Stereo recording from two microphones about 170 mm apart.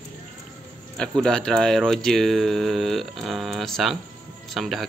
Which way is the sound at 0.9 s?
5° left (ahead or behind).